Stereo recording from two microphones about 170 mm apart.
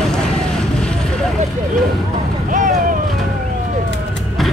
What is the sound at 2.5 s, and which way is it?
Vehicle, 50° right (ahead or behind).